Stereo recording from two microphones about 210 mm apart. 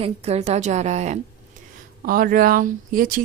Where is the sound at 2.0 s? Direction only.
45° right (ahead or behind).